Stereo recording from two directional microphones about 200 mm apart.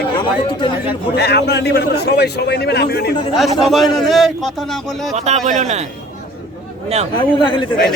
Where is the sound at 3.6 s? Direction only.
Centre (ahead or behind).